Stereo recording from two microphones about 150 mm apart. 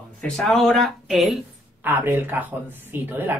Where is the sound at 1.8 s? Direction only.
10° right (ahead or behind).